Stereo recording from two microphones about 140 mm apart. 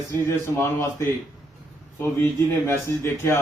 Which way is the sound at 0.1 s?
20° left (ahead or behind).